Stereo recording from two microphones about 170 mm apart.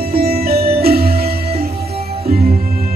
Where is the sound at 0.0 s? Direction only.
65° right (ahead or behind).